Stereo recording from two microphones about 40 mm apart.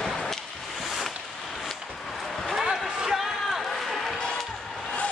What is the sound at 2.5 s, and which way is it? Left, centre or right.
Basketball bounce, centre.